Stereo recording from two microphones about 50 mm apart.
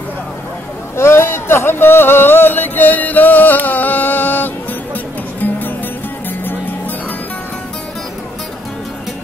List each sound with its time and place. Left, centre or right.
0.9 s music: left